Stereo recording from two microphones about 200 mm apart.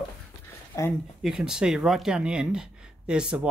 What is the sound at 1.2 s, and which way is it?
Speech, centre (ahead or behind).